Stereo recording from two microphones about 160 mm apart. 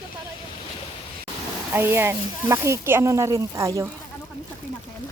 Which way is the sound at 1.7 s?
15° right (ahead or behind).